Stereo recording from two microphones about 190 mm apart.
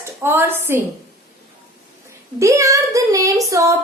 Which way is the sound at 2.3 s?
15° right (ahead or behind).